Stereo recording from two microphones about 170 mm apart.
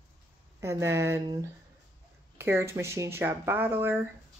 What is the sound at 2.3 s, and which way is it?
Speech, 15° right (ahead or behind).